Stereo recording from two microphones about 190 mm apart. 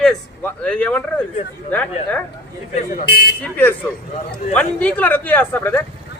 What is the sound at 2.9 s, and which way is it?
Speech, 55° left (ahead or behind).